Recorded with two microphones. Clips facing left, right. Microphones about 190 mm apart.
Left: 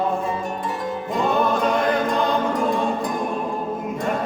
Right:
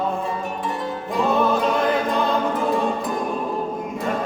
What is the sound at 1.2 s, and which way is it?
Music, centre (ahead or behind).